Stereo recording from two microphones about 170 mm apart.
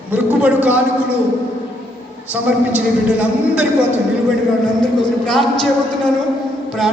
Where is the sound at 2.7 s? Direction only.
5° right (ahead or behind).